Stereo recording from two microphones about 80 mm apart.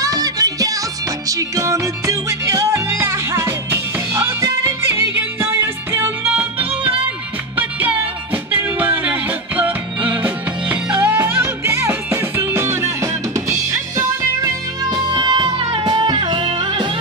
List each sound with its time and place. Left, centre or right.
0.0 s music: right; by 6.9 s centre
8.5 s music: right
14.9 s music: right